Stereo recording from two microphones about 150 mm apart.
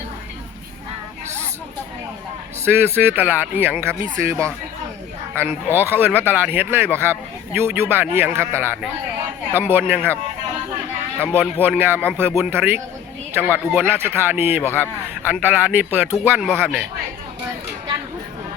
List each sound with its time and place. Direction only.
2.6 s a man's voice: 15° right (ahead or behind)
11.3 s a man's voice: 15° right (ahead or behind)
14.6 s speech: 15° left (ahead or behind)
15.3 s a man's voice: 10° right (ahead or behind)